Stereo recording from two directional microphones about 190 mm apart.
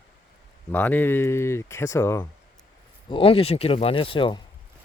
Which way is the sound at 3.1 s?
30° left (ahead or behind).